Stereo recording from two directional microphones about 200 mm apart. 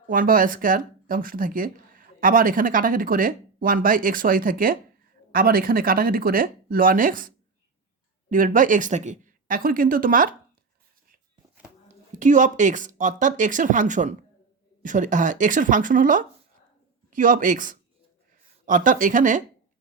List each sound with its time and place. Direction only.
0.1 s speech: 45° right (ahead or behind)
12.1 s speech: 40° right (ahead or behind)